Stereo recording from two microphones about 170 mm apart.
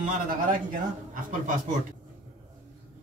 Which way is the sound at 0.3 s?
50° right (ahead or behind).